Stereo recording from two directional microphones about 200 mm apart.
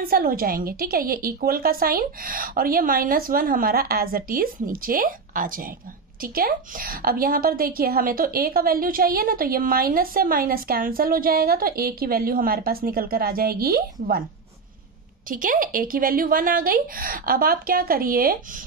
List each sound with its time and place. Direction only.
0.1 s a woman's voice: 45° right (ahead or behind)
15.2 s a woman's voice: 45° right (ahead or behind)